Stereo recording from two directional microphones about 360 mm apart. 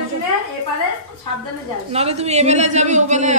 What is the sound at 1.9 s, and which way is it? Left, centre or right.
A man's voice, centre.